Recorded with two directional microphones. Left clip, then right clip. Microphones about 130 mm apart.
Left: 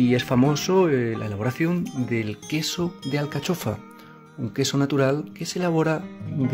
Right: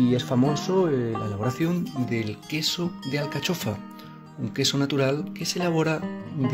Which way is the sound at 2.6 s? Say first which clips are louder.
Even; 15° left (ahead or behind).